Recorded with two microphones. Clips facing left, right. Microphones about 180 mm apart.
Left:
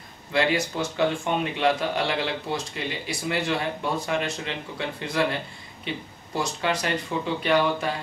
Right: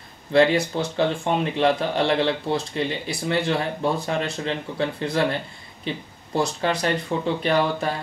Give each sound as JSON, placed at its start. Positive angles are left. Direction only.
{"t": 0.3, "sound": "speech", "side_deg": -35}
{"t": 6.3, "sound": "speech", "side_deg": -35}